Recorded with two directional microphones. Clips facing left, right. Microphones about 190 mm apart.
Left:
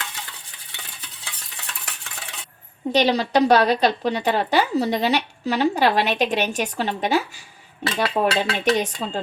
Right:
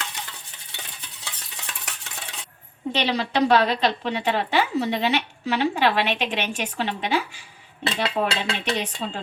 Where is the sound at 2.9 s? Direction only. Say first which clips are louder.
Left 6 dB; 40° left (ahead or behind).